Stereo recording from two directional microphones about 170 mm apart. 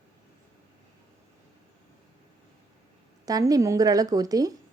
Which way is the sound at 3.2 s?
20° right (ahead or behind).